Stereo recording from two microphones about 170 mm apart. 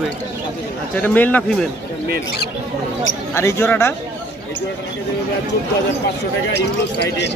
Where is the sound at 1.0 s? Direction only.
10° left (ahead or behind).